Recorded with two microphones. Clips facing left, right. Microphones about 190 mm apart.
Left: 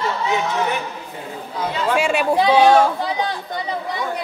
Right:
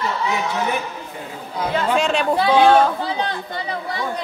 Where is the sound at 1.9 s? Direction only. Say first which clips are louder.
Left 2 dB; 10° left (ahead or behind).